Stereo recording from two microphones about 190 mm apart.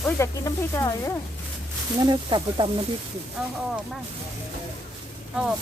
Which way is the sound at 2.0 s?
25° right (ahead or behind).